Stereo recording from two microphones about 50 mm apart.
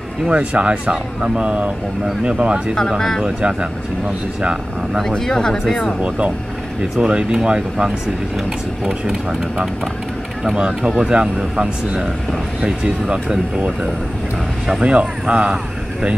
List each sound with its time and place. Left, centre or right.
0.3 s speech: right
3.0 s speech: centre
3.3 s speech: centre
5.0 s speech: centre
5.9 s speech: right
11.0 s speech: centre
14.7 s speech: right